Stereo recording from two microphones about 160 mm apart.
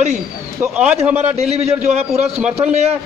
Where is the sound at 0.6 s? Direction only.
5° right (ahead or behind).